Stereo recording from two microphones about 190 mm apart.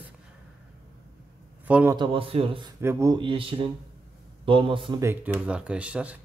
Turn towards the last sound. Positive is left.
turn(degrees=-5)  # may be behind; listen again after turning